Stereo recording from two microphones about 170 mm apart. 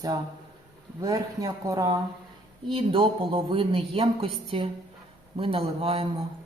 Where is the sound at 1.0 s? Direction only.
20° right (ahead or behind).